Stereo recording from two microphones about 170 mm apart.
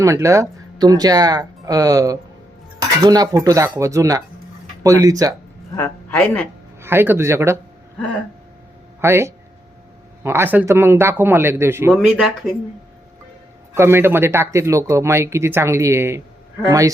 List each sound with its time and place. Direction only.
0.0 s speech: 20° right (ahead or behind)
5.7 s speech: 15° left (ahead or behind)
6.8 s speech: 10° right (ahead or behind)
9.0 s speech: 15° right (ahead or behind)
13.7 s speech: 15° right (ahead or behind)